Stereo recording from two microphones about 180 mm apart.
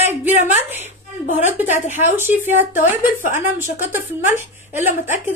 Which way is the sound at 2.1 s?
10° right (ahead or behind).